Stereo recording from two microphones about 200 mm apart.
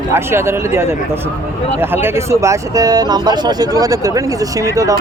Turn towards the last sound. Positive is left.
turn(degrees=-15)  # may be behind; listen again after turning